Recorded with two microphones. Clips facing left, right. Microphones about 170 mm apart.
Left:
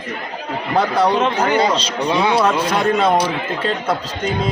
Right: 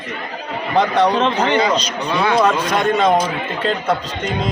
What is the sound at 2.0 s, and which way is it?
A man's voice, 10° left (ahead or behind).